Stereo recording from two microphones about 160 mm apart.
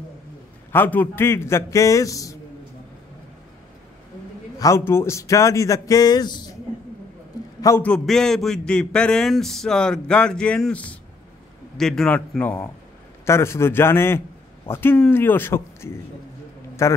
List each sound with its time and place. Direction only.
0.7 s a man's voice: 10° left (ahead or behind)
4.6 s a man's voice: 20° left (ahead or behind)
7.6 s a man's voice: 10° left (ahead or behind)